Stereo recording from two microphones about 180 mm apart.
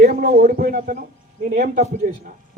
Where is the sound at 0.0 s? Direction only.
55° right (ahead or behind).